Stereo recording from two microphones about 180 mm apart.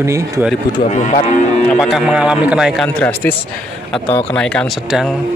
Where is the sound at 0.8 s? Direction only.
40° left (ahead or behind).